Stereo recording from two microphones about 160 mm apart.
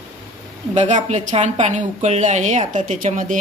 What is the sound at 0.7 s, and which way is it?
A woman's voice, 45° right (ahead or behind).